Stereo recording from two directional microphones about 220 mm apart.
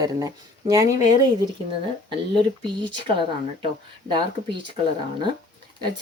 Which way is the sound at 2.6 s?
20° right (ahead or behind).